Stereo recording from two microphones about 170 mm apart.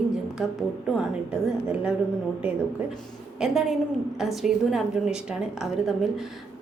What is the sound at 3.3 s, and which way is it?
A woman's voice, 5° right (ahead or behind).